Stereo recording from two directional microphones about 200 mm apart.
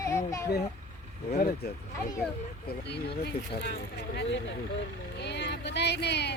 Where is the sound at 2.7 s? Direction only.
55° left (ahead or behind).